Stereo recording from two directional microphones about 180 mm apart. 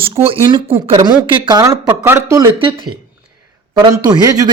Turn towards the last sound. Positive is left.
turn(degrees=-20)  # may be behind; listen again after turning